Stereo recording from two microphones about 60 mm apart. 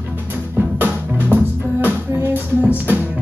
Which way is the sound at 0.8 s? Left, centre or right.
Right.